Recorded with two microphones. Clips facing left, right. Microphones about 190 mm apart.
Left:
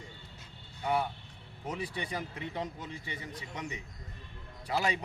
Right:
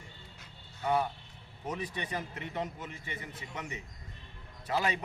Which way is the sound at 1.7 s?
10° left (ahead or behind).